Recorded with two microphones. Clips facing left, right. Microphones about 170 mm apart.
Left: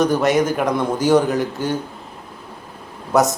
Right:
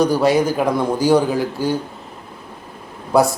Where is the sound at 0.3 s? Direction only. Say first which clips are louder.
Right 1 dB; 20° left (ahead or behind).